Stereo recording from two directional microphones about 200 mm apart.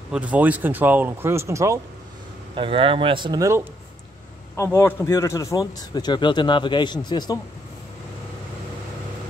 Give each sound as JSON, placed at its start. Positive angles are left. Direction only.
{"t": 0.1, "sound": "speech", "side_deg": -5}
{"t": 2.5, "sound": "speech", "side_deg": -25}
{"t": 4.6, "sound": "a man's voice", "side_deg": 10}